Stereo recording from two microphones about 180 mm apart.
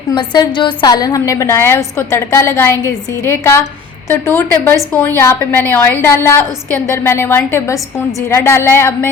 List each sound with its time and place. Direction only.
0.1 s a woman's voice: 25° left (ahead or behind)